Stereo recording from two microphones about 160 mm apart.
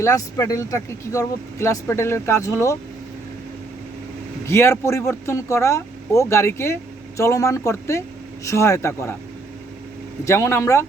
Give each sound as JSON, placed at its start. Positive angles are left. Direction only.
{"t": 0.0, "sound": "speech", "side_deg": 20}
{"t": 4.4, "sound": "speech", "side_deg": 15}
{"t": 10.2, "sound": "speech", "side_deg": 15}